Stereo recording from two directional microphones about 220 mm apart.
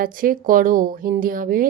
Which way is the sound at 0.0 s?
40° right (ahead or behind).